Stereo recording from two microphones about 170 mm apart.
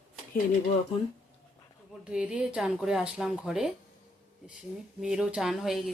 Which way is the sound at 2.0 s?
5° right (ahead or behind).